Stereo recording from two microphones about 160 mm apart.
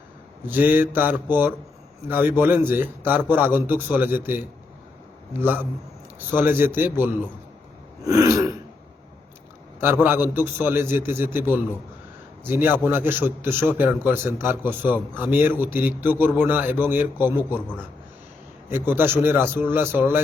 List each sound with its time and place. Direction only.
0.4 s a man's voice: 10° right (ahead or behind)
6.1 s a man's voice: 10° right (ahead or behind)
8.0 s throat clearing: 20° right (ahead or behind)
9.8 s a man's voice: 15° right (ahead or behind)
18.7 s a man's voice: 15° right (ahead or behind)